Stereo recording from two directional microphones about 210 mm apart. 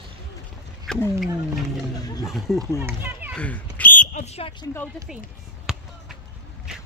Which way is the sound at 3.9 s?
35° left (ahead or behind).